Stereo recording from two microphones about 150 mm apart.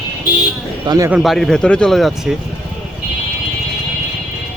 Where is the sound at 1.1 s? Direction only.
5° right (ahead or behind).